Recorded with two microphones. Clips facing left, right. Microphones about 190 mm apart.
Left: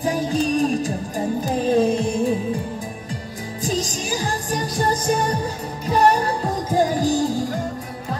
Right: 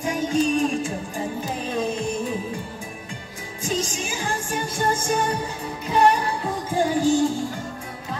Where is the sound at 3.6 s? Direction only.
35° left (ahead or behind).